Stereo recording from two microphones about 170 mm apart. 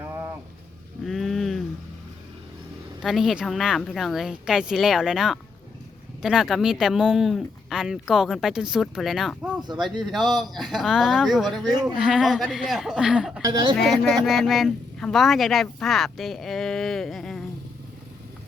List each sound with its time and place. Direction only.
1.0 s a sound: centre (ahead or behind)
3.0 s speech: centre (ahead or behind)
9.6 s speech: 25° right (ahead or behind)
9.8 s speech: centre (ahead or behind)
13.4 s speech: 25° right (ahead or behind)
13.7 s speech: centre (ahead or behind)